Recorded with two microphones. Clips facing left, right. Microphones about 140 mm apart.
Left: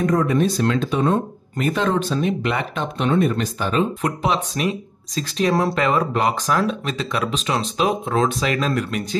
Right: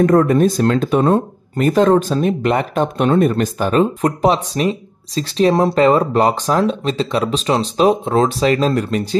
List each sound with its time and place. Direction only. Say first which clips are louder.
0.0 s speech: right 6 dB; 60° right (ahead or behind); by 9.0 s 35° right (ahead or behind)